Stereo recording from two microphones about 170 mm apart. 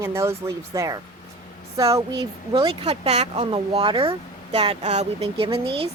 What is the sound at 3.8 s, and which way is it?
A woman's voice, 25° right (ahead or behind).